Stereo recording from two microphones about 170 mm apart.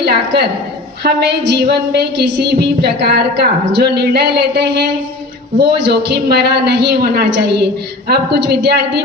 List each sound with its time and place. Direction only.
0.0 s a woman's voice: 70° right (ahead or behind)